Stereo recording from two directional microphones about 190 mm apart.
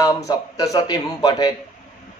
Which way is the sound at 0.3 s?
20° left (ahead or behind).